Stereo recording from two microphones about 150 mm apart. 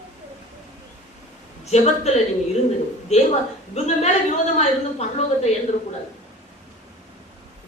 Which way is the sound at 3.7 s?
50° left (ahead or behind).